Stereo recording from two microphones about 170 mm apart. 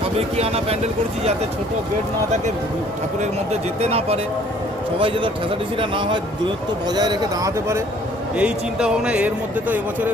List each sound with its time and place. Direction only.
0.0 s speech: 35° right (ahead or behind)
3.2 s a man's voice: 40° right (ahead or behind); by 7.8 s 20° right (ahead or behind)
8.4 s a man's voice: 5° right (ahead or behind)